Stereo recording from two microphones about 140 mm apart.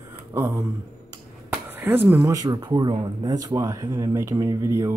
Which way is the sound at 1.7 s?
15° right (ahead or behind).